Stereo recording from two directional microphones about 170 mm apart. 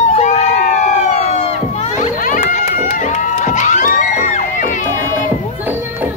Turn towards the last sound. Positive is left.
turn(degrees=-10)  # may be behind; listen again after turning